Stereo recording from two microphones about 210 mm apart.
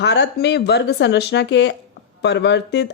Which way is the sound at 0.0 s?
55° left (ahead or behind).